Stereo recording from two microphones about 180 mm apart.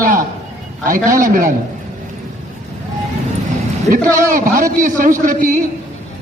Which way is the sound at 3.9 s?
50° right (ahead or behind).